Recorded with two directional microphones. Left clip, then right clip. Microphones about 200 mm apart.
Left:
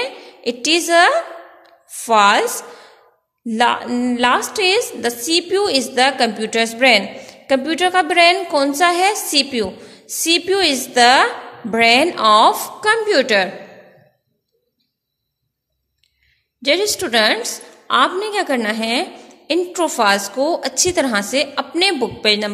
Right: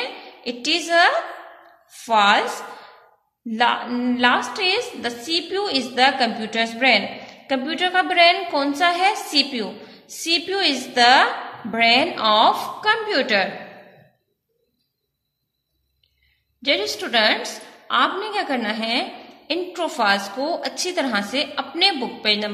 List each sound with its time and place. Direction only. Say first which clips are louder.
0.0 s a woman's voice: left 6 dB; 50° left (ahead or behind)
3.4 s a woman's voice: left 3 dB; 50° left (ahead or behind)
16.6 s a woman's voice: left 5 dB; 50° left (ahead or behind)